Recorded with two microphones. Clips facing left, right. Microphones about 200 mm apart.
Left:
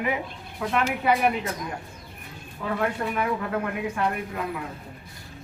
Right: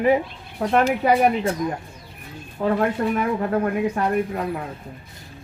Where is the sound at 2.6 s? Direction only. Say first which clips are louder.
Right 6 dB; 45° right (ahead or behind).